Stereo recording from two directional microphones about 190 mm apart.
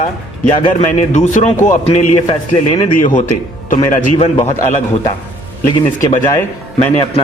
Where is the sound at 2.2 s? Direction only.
25° left (ahead or behind).